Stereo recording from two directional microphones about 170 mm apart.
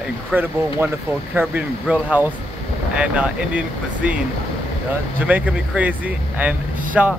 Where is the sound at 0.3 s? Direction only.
10° right (ahead or behind).